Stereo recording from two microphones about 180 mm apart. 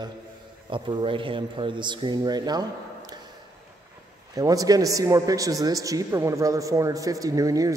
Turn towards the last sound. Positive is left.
turn(degrees=-20)  # may be behind; listen again after turning